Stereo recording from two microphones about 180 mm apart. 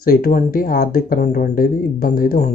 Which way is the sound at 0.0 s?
55° left (ahead or behind).